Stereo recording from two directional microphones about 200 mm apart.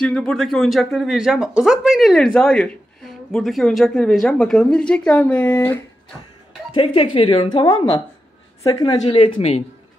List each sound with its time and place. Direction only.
0.0 s speech: 5° left (ahead or behind)
6.7 s speech: 25° left (ahead or behind)